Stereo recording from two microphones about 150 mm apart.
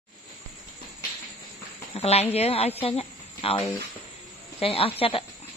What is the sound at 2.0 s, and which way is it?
A woman's voice, 45° left (ahead or behind).